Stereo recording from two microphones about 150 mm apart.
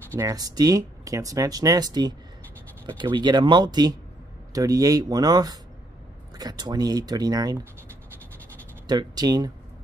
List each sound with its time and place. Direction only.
0.1 s speech: 20° right (ahead or behind)
8.8 s speech: 25° right (ahead or behind)